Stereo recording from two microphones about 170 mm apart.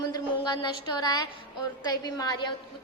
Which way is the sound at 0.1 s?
25° left (ahead or behind).